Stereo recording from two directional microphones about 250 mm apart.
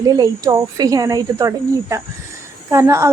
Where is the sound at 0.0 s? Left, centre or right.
Centre.